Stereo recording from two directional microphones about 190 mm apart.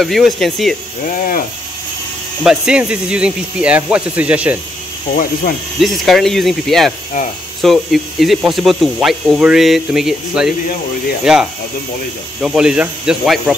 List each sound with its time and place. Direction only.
0.0 s speech: centre (ahead or behind)
1.0 s speech: 50° left (ahead or behind)
2.4 s speech: 5° right (ahead or behind)
5.1 s speech: 45° left (ahead or behind)
5.8 s speech: centre (ahead or behind)